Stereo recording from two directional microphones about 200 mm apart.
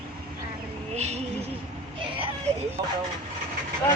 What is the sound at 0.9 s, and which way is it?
Vehicle, 35° right (ahead or behind).